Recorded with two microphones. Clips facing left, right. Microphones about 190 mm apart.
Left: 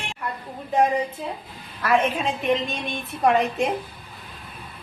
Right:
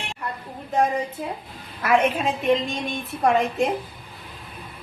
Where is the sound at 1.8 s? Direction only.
15° right (ahead or behind).